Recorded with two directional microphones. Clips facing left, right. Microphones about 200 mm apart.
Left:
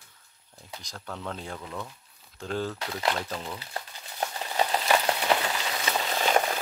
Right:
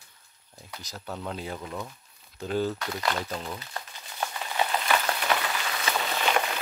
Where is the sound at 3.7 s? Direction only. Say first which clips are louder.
Left 1 dB; 35° left (ahead or behind).